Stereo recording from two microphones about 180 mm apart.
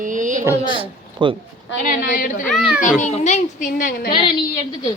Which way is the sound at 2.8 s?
45° left (ahead or behind).